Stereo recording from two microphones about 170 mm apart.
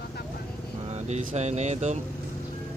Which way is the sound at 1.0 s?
40° right (ahead or behind).